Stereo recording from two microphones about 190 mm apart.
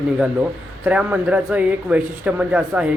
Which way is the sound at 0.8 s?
10° right (ahead or behind).